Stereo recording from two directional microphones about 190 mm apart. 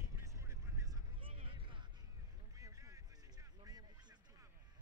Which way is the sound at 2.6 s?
15° right (ahead or behind).